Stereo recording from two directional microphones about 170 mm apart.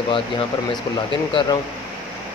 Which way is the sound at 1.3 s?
30° left (ahead or behind).